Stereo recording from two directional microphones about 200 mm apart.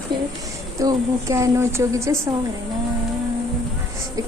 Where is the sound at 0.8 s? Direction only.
15° right (ahead or behind).